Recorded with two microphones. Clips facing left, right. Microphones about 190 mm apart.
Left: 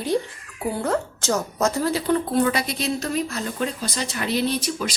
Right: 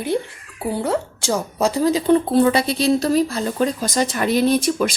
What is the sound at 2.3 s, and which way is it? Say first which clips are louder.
Speech: right 5 dB; 30° right (ahead or behind).